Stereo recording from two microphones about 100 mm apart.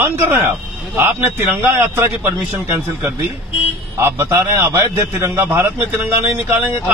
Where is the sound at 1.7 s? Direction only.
25° right (ahead or behind).